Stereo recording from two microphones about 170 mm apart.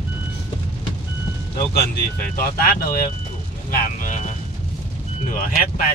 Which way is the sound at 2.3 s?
60° left (ahead or behind).